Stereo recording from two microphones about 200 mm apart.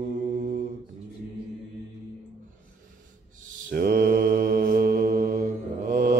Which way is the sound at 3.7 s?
50° right (ahead or behind).